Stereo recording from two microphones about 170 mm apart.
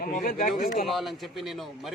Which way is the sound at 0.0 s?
50° left (ahead or behind).